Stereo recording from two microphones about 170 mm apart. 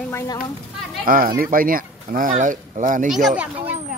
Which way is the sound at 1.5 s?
55° right (ahead or behind).